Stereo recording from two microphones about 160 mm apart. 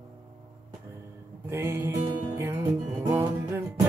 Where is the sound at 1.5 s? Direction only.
20° right (ahead or behind).